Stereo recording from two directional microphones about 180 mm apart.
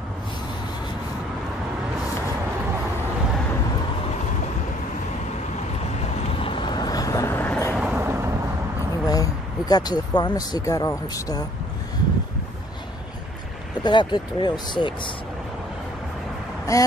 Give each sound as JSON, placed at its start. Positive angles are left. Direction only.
{"t": 6.3, "sound": "vehicle", "side_deg": 30}
{"t": 7.7, "sound": "vehicle", "side_deg": -5}
{"t": 9.0, "sound": "speech", "side_deg": 20}
{"t": 13.8, "sound": "speech", "side_deg": 25}
{"t": 16.7, "sound": "speech", "side_deg": 20}